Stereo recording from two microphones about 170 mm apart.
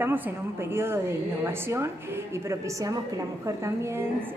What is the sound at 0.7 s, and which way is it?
A woman's voice, 15° right (ahead or behind).